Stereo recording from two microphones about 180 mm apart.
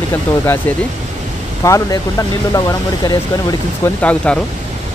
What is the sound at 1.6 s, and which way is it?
Speech, 15° left (ahead or behind).